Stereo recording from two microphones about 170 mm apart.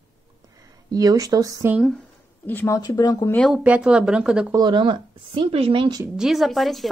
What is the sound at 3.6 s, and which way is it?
Speech, 5° right (ahead or behind).